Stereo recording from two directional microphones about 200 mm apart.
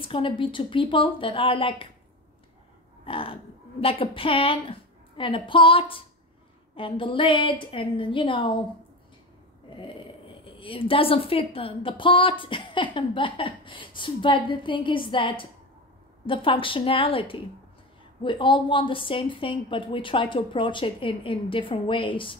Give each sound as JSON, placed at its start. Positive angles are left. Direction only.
{"t": 0.0, "sound": "speech", "side_deg": 25}
{"t": 3.1, "sound": "a sound", "side_deg": 25}
{"t": 3.8, "sound": "speech", "side_deg": 25}
{"t": 9.8, "sound": "speech", "side_deg": 25}